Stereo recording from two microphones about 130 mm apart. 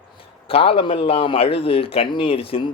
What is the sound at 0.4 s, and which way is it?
A man's voice, 45° left (ahead or behind).